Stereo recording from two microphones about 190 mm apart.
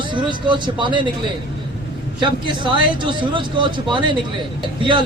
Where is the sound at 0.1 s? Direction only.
25° right (ahead or behind).